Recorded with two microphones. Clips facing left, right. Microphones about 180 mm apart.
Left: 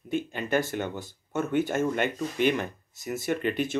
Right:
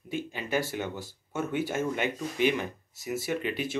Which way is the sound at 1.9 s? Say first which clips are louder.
Left 3 dB; 55° left (ahead or behind).